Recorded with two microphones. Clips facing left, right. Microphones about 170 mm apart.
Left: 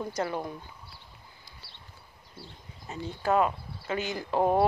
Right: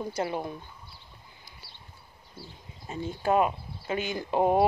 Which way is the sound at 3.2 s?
20° right (ahead or behind).